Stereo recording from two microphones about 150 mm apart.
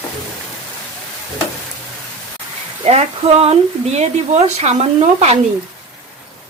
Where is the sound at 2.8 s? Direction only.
45° right (ahead or behind).